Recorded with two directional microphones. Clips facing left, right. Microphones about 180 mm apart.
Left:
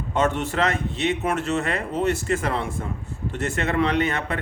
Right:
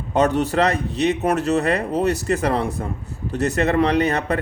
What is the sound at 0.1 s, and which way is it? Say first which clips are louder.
Speech: right 5 dB; 40° right (ahead or behind).